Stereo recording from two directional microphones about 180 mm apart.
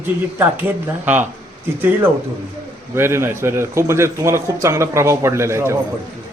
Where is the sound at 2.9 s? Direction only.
15° right (ahead or behind).